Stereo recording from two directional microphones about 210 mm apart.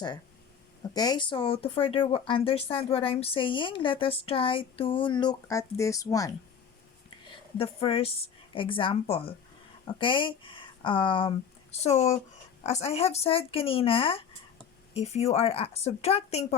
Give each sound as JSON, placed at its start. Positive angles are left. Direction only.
{"t": 0.9, "sound": "speech", "side_deg": 20}
{"t": 7.6, "sound": "speech", "side_deg": 25}